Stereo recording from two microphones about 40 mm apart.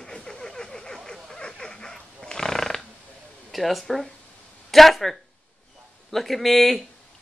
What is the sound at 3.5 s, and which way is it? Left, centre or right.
Speech, centre.